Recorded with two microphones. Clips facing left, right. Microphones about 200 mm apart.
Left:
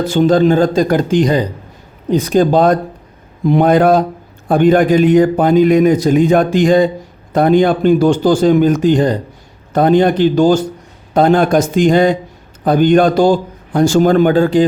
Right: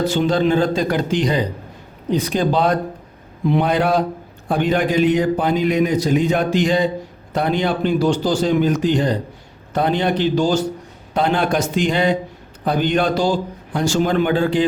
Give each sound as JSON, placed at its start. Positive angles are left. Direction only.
{"t": 0.1, "sound": "a man's voice", "side_deg": 45}